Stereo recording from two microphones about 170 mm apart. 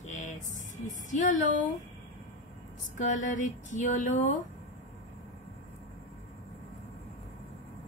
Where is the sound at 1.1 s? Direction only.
45° left (ahead or behind).